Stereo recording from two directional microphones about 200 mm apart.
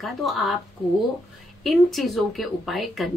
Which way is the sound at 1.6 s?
Centre (ahead or behind).